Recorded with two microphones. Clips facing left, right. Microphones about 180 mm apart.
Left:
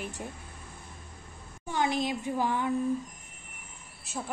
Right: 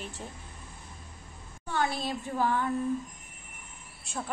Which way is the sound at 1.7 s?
15° left (ahead or behind).